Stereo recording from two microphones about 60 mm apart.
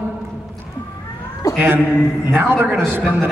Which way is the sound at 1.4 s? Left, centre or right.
Left.